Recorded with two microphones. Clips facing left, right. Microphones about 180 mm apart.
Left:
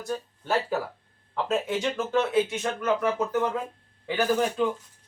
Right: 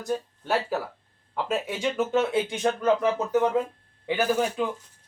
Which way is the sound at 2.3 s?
30° right (ahead or behind).